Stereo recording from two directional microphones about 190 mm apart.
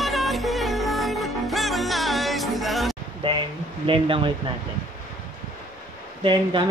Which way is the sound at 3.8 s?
30° right (ahead or behind).